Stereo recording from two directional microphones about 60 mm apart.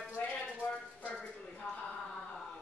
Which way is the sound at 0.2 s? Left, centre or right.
Left.